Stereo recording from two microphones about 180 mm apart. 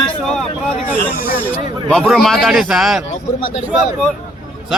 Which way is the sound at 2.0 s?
Centre (ahead or behind).